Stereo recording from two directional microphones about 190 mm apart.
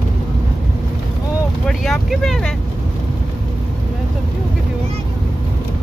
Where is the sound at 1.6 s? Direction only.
Centre (ahead or behind).